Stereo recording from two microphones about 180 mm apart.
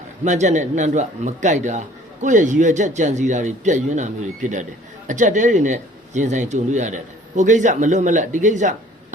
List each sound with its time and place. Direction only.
0.3 s a man's voice: 40° right (ahead or behind)